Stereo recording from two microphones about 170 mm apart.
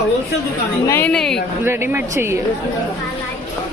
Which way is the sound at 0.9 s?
15° left (ahead or behind).